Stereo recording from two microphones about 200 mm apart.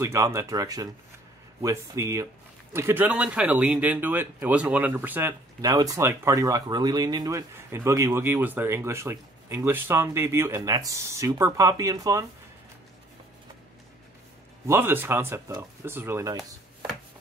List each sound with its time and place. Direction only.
0.0 s speech: 15° right (ahead or behind)
14.7 s speech: 10° right (ahead or behind)